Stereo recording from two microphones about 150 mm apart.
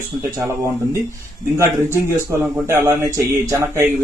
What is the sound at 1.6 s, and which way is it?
A man's voice, 15° right (ahead or behind).